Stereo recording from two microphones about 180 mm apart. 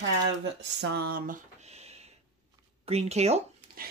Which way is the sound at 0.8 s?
60° right (ahead or behind).